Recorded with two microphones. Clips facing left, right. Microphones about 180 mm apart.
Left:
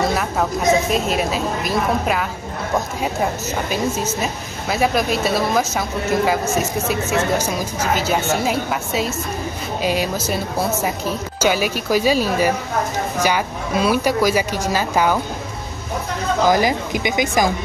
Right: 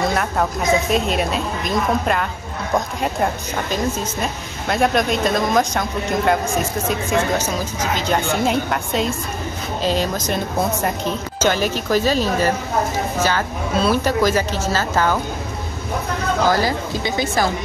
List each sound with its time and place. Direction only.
0.0 s a woman's voice: centre (ahead or behind)
3.7 s a woman's voice: 5° left (ahead or behind)
16.4 s speech: 15° left (ahead or behind)